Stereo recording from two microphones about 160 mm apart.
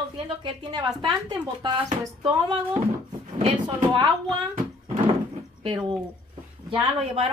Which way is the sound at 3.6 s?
30° right (ahead or behind).